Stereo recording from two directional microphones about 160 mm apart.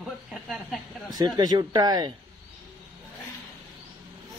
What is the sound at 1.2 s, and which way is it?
Speech, 25° right (ahead or behind).